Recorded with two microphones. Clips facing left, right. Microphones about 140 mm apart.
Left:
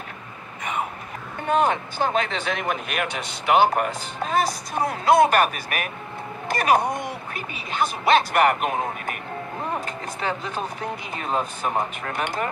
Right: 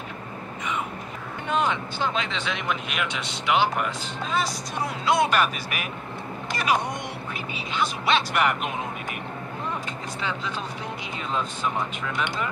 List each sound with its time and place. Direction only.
1.5 s speech: 50° left (ahead or behind)
10.2 s speech: 55° left (ahead or behind)